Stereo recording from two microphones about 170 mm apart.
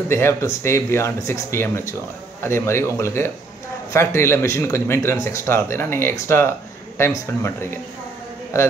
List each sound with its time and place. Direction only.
0.1 s speech: 15° left (ahead or behind)